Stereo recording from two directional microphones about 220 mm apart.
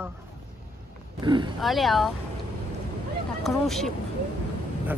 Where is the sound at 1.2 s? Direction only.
20° right (ahead or behind).